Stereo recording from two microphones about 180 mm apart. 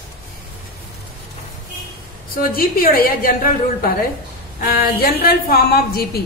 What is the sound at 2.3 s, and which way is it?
A woman's voice, 55° left (ahead or behind).